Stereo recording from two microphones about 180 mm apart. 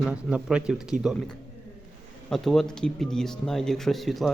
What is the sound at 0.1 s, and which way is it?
Speech, 5° right (ahead or behind).